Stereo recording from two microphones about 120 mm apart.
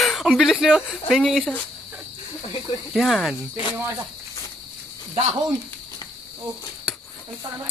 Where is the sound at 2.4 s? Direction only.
40° left (ahead or behind).